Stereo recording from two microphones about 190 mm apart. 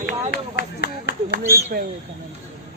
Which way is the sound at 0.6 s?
60° left (ahead or behind).